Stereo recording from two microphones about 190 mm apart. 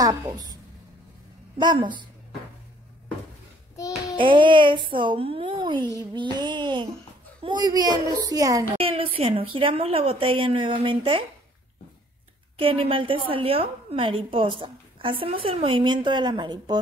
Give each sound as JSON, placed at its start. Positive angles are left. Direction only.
{"t": 0.0, "sound": "a woman's voice", "side_deg": -20}
{"t": 1.6, "sound": "a woman's voice", "side_deg": -25}
{"t": 4.2, "sound": "a woman's voice", "side_deg": -25}
{"t": 8.7, "sound": "a woman's voice", "side_deg": -30}
{"t": 12.5, "sound": "a woman's voice", "side_deg": -30}